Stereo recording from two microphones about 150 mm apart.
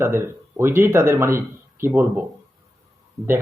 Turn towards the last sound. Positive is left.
turn(degrees=-20)  # may be behind; listen again after turning